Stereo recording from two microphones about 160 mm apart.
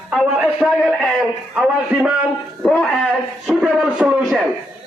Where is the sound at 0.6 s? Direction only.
Centre (ahead or behind).